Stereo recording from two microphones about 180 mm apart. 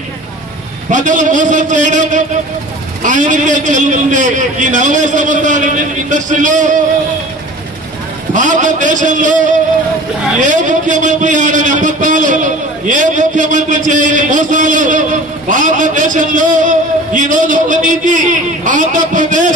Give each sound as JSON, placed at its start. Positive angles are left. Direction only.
{"t": 0.8, "sound": "a man's voice", "side_deg": -45}
{"t": 8.3, "sound": "a man's voice", "side_deg": -45}